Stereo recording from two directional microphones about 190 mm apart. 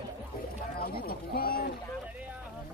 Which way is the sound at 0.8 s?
50° left (ahead or behind).